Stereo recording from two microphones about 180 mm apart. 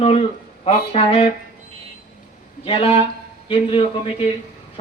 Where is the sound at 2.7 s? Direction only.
30° left (ahead or behind).